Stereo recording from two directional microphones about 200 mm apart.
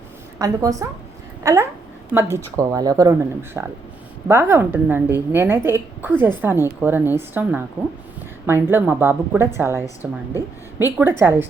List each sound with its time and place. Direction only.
0.3 s a woman's voice: 15° right (ahead or behind)